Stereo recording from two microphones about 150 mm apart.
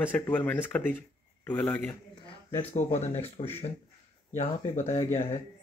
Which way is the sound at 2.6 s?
45° left (ahead or behind).